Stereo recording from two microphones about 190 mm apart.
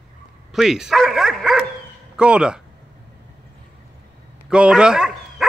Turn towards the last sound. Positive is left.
turn(degrees=-5)  # may be behind; listen again after turning